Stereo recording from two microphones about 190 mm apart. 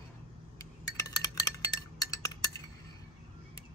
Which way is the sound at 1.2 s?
20° left (ahead or behind).